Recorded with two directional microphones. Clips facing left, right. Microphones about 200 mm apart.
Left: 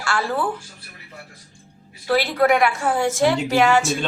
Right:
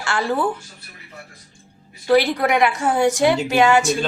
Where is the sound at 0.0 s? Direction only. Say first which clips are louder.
Right 2 dB; 20° right (ahead or behind).